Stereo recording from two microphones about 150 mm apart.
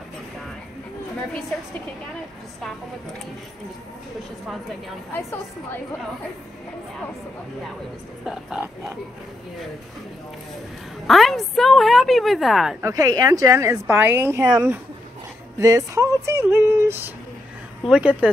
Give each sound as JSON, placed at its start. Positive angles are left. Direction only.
{"t": 5.1, "sound": "a woman's voice", "side_deg": 15}
{"t": 8.3, "sound": "a woman's voice", "side_deg": -5}
{"t": 11.1, "sound": "a woman's voice", "side_deg": 0}
{"t": 12.8, "sound": "speech", "side_deg": -25}
{"t": 15.6, "sound": "a woman's voice", "side_deg": -20}